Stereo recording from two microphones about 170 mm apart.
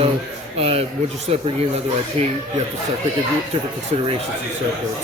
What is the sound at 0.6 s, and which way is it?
Speech, 35° right (ahead or behind).